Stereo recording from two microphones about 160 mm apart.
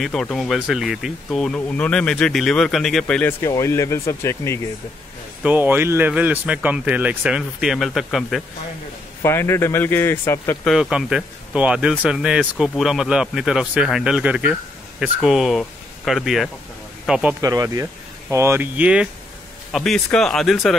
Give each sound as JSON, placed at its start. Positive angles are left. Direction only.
{"t": 0.0, "sound": "speech", "side_deg": 5}
{"t": 5.4, "sound": "speech", "side_deg": -10}
{"t": 9.2, "sound": "speech", "side_deg": 15}
{"t": 10.7, "sound": "speech", "side_deg": -5}
{"t": 17.4, "sound": "speech", "side_deg": -20}